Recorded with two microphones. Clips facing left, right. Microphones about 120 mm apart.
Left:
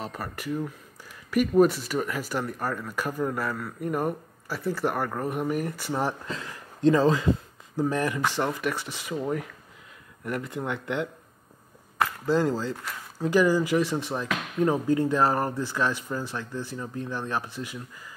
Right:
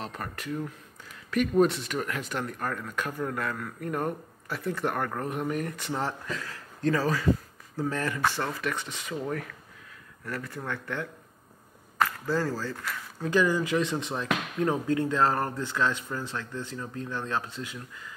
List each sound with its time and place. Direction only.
0.0 s speech: 5° left (ahead or behind)
6.2 s speech: 30° left (ahead or behind); by 17.8 s 10° left (ahead or behind)